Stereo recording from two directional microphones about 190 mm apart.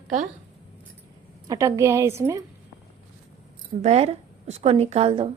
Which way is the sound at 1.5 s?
15° right (ahead or behind).